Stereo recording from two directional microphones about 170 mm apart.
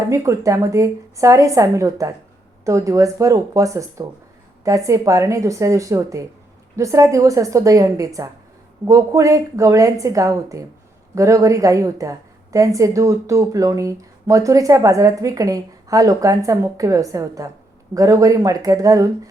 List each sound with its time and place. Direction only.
0.1 s a woman's voice: 20° right (ahead or behind)